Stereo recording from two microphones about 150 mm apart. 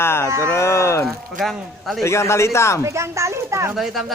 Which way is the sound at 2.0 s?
20° left (ahead or behind).